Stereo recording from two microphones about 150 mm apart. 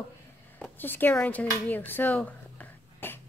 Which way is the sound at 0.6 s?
15° left (ahead or behind).